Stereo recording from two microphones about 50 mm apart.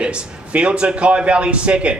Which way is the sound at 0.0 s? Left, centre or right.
Right.